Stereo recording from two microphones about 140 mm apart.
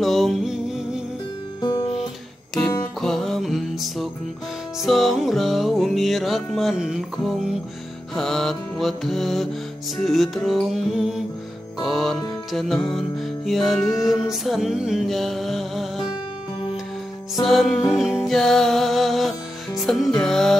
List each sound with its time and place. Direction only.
0.0 s music: centre (ahead or behind)
1.6 s guitar: 30° left (ahead or behind)
3.0 s music: centre (ahead or behind)
17.4 s music: centre (ahead or behind)